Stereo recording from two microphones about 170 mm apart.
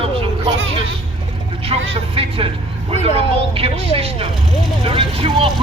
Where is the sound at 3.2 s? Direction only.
35° right (ahead or behind).